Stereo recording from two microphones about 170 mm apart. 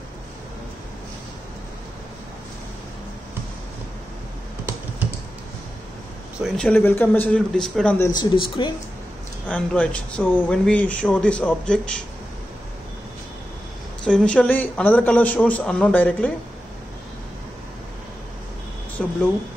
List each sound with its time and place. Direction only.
6.4 s speech: 5° left (ahead or behind)
8.0 s speech: 25° left (ahead or behind)
9.5 s a man's voice: 5° left (ahead or behind)
14.0 s a man's voice: 5° left (ahead or behind)
19.0 s speech: 5° left (ahead or behind)